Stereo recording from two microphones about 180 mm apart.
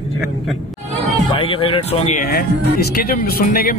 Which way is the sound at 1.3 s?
30° left (ahead or behind).